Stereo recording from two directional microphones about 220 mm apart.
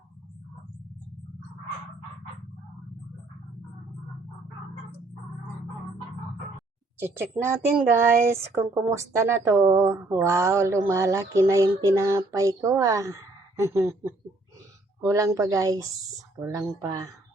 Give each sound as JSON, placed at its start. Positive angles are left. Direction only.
{"t": 7.0, "sound": "speech", "side_deg": -10}